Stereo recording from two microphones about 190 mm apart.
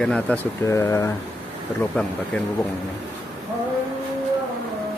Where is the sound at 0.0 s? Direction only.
5° left (ahead or behind).